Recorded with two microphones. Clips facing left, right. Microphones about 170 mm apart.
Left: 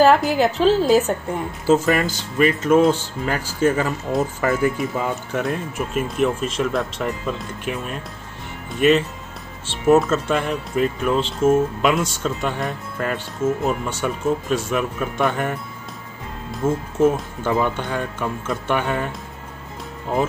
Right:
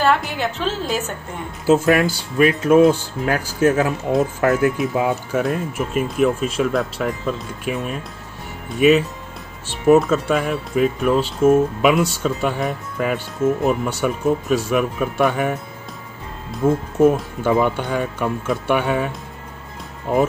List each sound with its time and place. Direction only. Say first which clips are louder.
0.4 s a woman's voice: left 7 dB; 35° left (ahead or behind)
1.7 s speech: right 2 dB; 5° right (ahead or behind)
16.6 s speech: right 3 dB; 15° right (ahead or behind)